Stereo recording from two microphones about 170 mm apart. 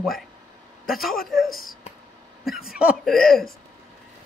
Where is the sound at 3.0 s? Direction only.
Centre (ahead or behind).